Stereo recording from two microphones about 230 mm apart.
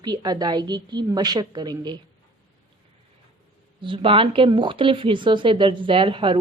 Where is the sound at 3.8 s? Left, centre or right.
Right.